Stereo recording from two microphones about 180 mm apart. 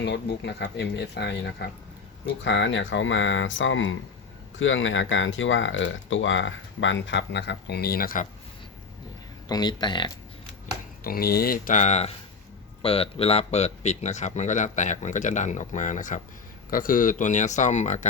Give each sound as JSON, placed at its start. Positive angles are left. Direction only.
{"t": 0.0, "sound": "speech", "side_deg": 70}
{"t": 2.2, "sound": "speech", "side_deg": 80}
{"t": 9.5, "sound": "speech", "side_deg": 20}
{"t": 11.0, "sound": "speech", "side_deg": 55}